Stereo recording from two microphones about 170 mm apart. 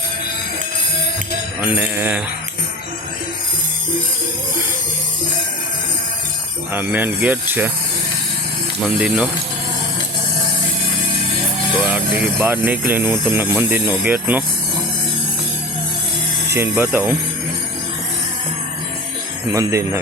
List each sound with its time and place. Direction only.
1.6 s speech: 10° right (ahead or behind)
6.7 s speech: 10° right (ahead or behind)
9.0 s speech: 5° right (ahead or behind)
11.8 s speech: 5° right (ahead or behind)
16.5 s speech: 15° right (ahead or behind)
19.5 s speech: 15° right (ahead or behind)